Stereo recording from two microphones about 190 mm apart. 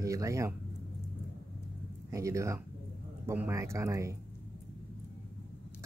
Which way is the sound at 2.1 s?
15° right (ahead or behind).